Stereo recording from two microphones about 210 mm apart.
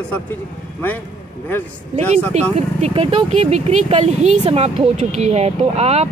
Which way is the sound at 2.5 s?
30° right (ahead or behind).